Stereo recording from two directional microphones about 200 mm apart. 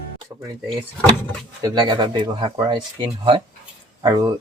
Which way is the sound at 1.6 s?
20° right (ahead or behind).